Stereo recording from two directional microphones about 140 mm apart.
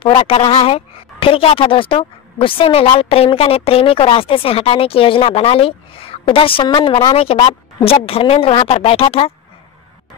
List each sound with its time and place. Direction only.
0.0 s speech: 40° left (ahead or behind)
7.2 s a woman's voice: 45° left (ahead or behind)